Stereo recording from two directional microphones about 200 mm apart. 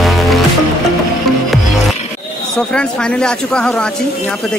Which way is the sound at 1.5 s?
Centre (ahead or behind).